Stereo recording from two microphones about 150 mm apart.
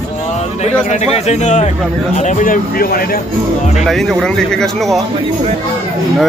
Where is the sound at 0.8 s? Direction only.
50° left (ahead or behind); by 3.2 s 80° left.